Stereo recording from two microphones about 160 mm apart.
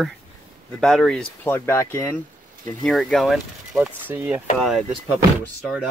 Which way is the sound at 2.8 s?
Centre (ahead or behind).